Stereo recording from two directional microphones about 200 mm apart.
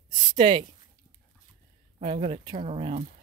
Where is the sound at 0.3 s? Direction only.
25° right (ahead or behind).